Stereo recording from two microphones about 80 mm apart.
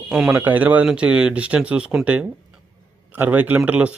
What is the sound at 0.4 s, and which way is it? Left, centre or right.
Speech, right.